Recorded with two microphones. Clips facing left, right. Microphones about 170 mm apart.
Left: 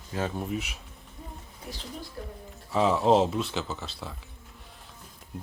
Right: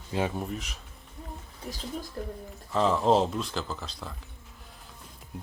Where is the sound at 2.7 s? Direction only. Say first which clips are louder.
Left 1 dB; 5° left (ahead or behind).